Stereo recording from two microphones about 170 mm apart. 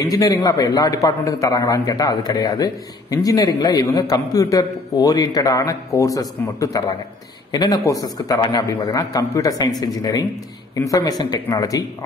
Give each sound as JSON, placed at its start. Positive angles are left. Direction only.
{"t": 0.0, "sound": "a man's voice", "side_deg": 20}